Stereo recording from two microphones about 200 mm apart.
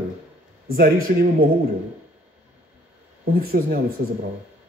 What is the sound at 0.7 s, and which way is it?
Speech, 45° right (ahead or behind).